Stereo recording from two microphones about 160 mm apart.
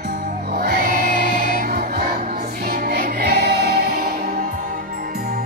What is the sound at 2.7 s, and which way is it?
Music, 75° right (ahead or behind).